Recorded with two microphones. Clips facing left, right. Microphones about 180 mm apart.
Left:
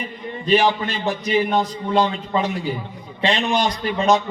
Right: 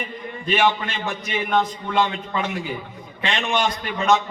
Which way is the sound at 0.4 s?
35° left (ahead or behind).